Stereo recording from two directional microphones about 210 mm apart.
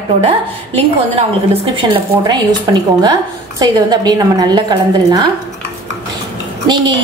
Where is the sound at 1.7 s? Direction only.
25° right (ahead or behind).